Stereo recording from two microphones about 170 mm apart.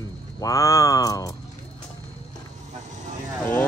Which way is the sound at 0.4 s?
20° left (ahead or behind).